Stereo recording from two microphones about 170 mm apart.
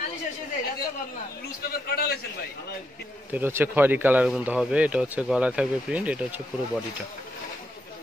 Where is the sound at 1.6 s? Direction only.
60° left (ahead or behind).